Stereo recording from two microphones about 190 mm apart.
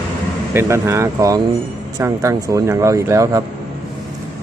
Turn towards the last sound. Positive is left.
turn(degrees=-15)  # may be behind; listen again after turning